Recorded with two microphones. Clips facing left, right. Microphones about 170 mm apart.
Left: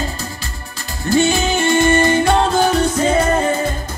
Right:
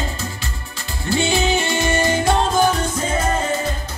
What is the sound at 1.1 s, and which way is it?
Music, 45° left (ahead or behind).